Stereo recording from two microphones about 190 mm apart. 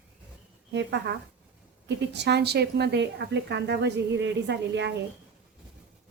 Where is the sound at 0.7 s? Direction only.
70° right (ahead or behind).